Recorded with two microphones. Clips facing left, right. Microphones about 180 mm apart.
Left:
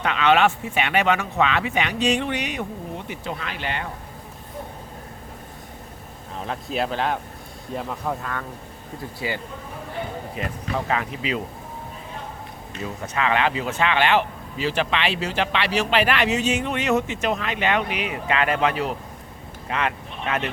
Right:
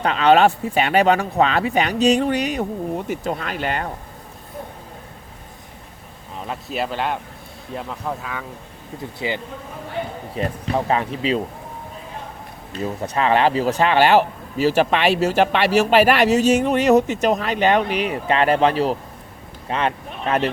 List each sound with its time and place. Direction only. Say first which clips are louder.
0.0 s speech: right 4 dB; 35° right (ahead or behind)
6.4 s speech: even; centre (ahead or behind)
9.1 s speech: right 3 dB; 20° right (ahead or behind)
10.3 s speech: right 7 dB; 30° right (ahead or behind)
12.8 s speech: right 5 dB; 35° right (ahead or behind)